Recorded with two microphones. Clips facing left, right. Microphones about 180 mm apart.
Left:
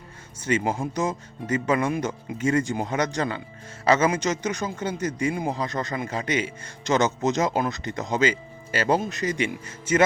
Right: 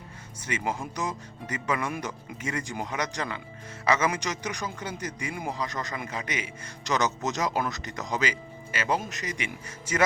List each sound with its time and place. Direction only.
0.3 s a man's voice: 30° left (ahead or behind)